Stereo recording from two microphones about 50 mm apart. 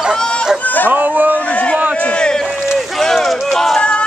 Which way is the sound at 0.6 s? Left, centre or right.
Left.